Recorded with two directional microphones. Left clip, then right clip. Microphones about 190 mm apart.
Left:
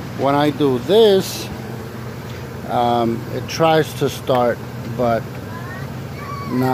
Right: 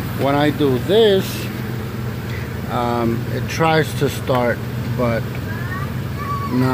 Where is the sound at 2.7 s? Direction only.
10° left (ahead or behind).